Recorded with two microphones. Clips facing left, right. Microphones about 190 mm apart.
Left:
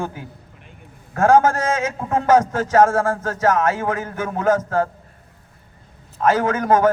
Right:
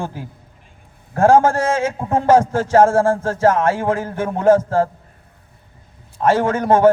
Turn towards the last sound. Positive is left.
turn(degrees=-30)  # may be behind; listen again after turning